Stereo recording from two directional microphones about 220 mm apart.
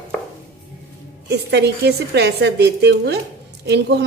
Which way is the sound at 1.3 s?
50° right (ahead or behind).